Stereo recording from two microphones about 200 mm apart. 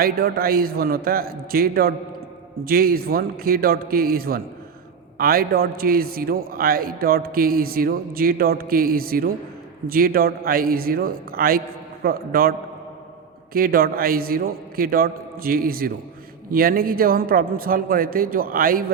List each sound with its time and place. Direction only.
0.0 s a man's voice: 50° right (ahead or behind)